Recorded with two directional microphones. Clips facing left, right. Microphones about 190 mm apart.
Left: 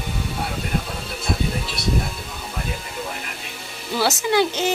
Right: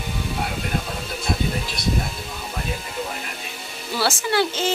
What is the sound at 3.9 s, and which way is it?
Speech, 15° left (ahead or behind).